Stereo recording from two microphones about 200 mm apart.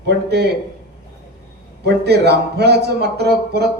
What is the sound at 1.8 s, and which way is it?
Speech, 55° right (ahead or behind).